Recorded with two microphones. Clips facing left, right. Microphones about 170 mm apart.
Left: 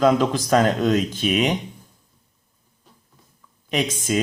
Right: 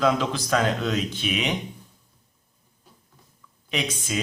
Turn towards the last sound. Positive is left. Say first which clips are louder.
# left 6 dB
turn(degrees=45)  # may be behind; listen again after turning